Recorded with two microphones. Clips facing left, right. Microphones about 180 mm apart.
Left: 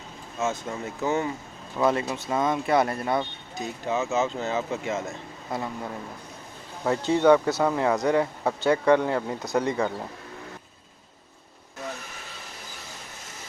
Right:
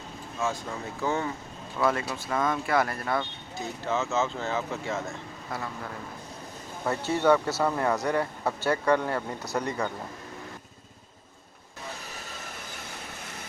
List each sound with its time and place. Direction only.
0.3 s speech: 20° left (ahead or behind)